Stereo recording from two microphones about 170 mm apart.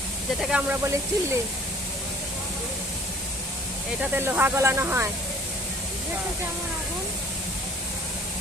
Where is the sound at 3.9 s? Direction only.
10° right (ahead or behind).